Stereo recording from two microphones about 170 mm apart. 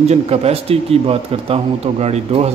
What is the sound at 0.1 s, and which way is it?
A man's voice, 40° right (ahead or behind).